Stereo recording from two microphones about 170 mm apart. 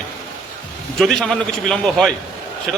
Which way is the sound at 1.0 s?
Centre (ahead or behind).